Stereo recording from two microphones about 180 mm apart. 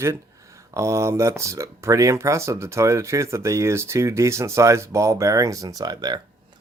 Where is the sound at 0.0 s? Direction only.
15° right (ahead or behind).